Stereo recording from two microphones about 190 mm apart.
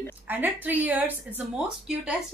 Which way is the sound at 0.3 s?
10° right (ahead or behind).